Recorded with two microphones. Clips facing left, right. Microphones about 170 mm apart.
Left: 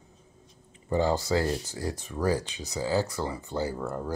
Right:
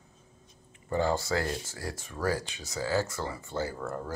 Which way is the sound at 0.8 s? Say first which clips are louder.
Left 3 dB; 20° left (ahead or behind).